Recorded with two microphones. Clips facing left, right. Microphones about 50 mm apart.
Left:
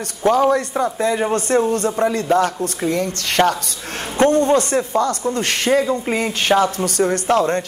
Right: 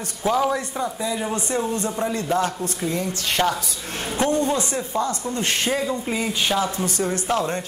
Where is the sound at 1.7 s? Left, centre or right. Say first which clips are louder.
Left 6 dB; left.